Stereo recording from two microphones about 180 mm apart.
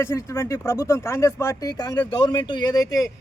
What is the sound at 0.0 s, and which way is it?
A man's voice, 15° left (ahead or behind).